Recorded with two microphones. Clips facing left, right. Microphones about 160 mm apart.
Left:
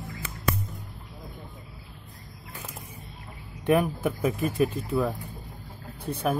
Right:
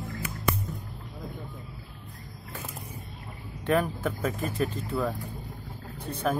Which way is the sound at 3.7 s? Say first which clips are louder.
Left 3 dB; 15° left (ahead or behind).